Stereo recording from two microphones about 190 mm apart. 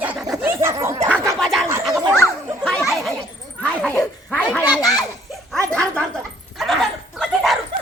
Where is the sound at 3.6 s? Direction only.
5° left (ahead or behind).